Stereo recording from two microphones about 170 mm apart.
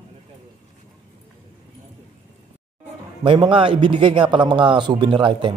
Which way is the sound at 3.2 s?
30° right (ahead or behind).